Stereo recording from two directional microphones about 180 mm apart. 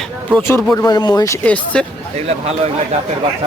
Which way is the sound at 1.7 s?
5° left (ahead or behind).